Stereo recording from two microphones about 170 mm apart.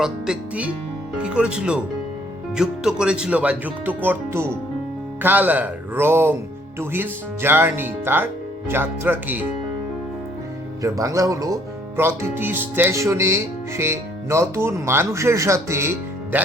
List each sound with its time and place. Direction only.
0.0 s music: 5° right (ahead or behind)
1.2 s speech: 5° right (ahead or behind)
10.8 s speech: 20° right (ahead or behind)